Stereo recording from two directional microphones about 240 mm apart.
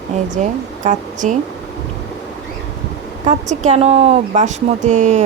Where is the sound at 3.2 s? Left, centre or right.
Right.